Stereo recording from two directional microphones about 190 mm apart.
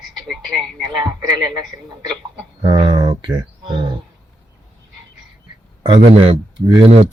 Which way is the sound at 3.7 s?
25° right (ahead or behind).